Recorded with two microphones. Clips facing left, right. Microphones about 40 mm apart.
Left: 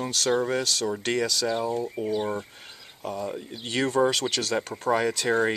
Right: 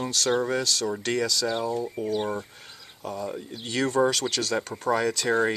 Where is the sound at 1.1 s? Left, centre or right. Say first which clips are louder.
Even; centre.